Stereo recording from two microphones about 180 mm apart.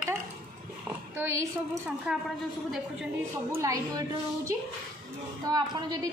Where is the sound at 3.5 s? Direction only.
20° right (ahead or behind).